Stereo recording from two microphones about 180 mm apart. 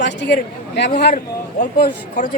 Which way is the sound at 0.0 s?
75° left (ahead or behind).